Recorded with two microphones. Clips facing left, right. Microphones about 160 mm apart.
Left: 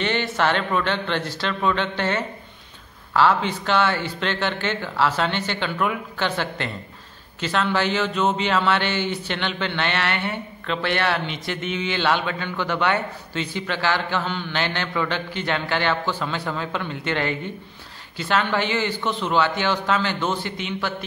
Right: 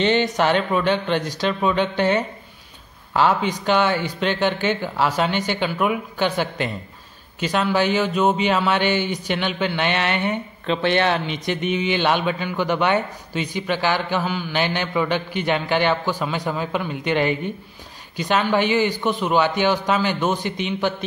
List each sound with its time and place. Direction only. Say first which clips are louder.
0.0 s a man's voice: right 4 dB; 15° right (ahead or behind)